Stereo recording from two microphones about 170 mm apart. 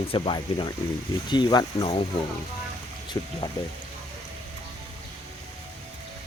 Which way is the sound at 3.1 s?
25° left (ahead or behind).